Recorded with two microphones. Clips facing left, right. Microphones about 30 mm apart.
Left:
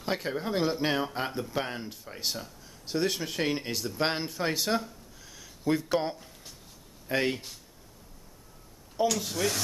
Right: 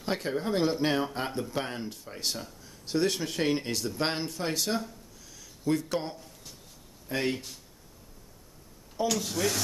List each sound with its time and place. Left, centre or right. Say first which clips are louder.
0.0 s speech: right 1 dB; centre
5.2 s a sound: left 1 dB; centre
7.2 s speech: even; centre
9.0 s speech: left 1 dB; centre